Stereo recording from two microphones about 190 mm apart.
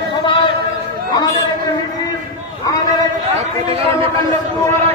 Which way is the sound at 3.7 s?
30° right (ahead or behind).